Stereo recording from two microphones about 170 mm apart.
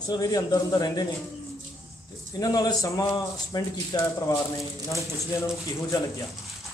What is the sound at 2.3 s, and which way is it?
Speech, 20° left (ahead or behind).